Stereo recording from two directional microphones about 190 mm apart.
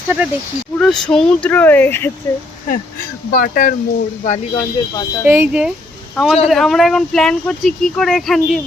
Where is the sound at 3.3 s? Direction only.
50° left (ahead or behind).